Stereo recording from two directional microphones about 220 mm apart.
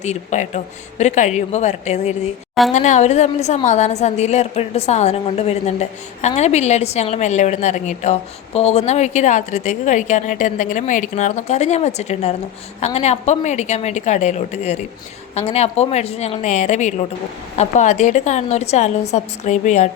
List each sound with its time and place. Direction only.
0.0 s a woman's voice: 30° left (ahead or behind)